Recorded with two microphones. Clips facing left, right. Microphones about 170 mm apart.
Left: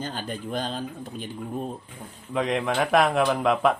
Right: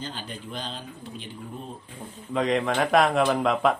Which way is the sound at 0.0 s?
45° left (ahead or behind).